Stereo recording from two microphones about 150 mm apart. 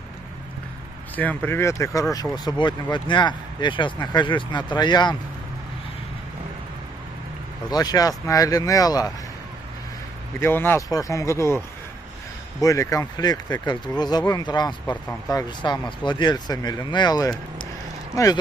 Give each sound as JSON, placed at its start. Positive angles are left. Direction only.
{"t": 1.1, "sound": "speech", "side_deg": 10}
{"t": 7.7, "sound": "speech", "side_deg": 25}
{"t": 10.4, "sound": "speech", "side_deg": 15}